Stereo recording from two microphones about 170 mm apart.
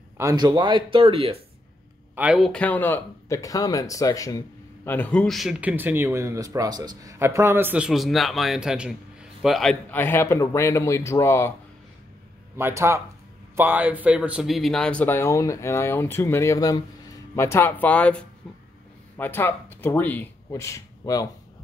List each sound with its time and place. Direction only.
0.2 s speech: 20° right (ahead or behind)
2.1 s speech: 5° right (ahead or behind); by 11.5 s 15° left (ahead or behind)
12.5 s speech: 15° right (ahead or behind); by 21.3 s 20° left (ahead or behind)